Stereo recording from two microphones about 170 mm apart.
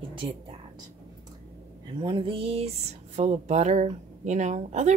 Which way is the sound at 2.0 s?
30° right (ahead or behind).